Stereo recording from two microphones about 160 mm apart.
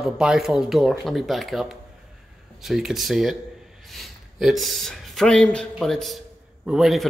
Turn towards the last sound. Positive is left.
turn(degrees=0)  # may be behind; listen again after turning